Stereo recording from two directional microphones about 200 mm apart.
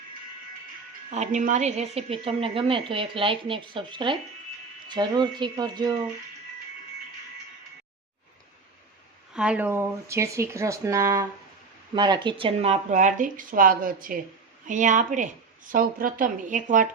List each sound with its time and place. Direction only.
1.1 s a woman's voice: 35° right (ahead or behind); by 5.9 s 20° right (ahead or behind)
9.3 s speech: 5° right (ahead or behind); by 16.9 s 40° right (ahead or behind)